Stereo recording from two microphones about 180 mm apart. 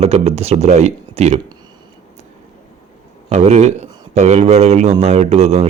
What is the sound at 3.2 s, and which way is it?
Speech, 40° right (ahead or behind).